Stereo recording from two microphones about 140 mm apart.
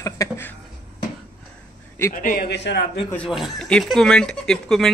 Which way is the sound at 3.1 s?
5° left (ahead or behind).